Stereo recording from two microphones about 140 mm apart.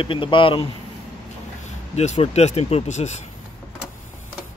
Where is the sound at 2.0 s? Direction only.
50° left (ahead or behind).